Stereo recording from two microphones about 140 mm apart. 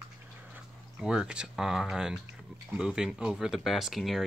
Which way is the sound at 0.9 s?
5° right (ahead or behind).